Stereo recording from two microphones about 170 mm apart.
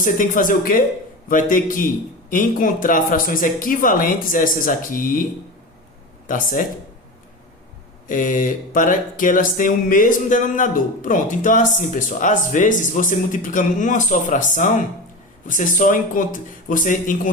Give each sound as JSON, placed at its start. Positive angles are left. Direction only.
{"t": 0.0, "sound": "mantra", "side_deg": 55}
{"t": 6.2, "sound": "speech", "side_deg": 50}
{"t": 8.0, "sound": "mantra", "side_deg": 50}